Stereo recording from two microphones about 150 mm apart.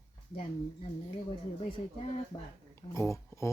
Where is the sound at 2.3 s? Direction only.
25° left (ahead or behind).